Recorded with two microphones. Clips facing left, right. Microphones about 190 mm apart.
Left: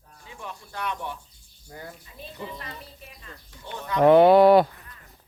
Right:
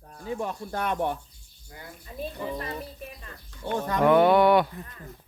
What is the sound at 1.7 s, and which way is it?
Speech, 40° left (ahead or behind).